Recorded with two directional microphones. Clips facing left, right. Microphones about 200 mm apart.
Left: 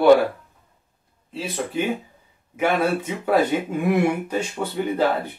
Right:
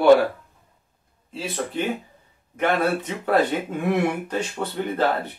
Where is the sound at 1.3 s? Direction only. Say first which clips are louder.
Left 1 dB; centre (ahead or behind).